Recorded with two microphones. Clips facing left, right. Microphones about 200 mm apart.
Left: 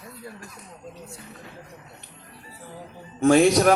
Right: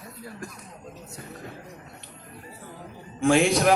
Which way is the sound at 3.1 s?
40° left (ahead or behind).